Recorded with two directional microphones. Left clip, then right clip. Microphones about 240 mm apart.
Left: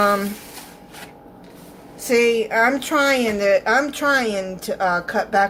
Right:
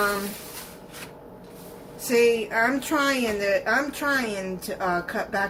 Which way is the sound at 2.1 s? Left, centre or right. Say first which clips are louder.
Left 4 dB; left.